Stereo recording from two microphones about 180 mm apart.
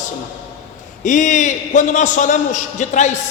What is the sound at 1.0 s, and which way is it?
A man's voice, 45° left (ahead or behind).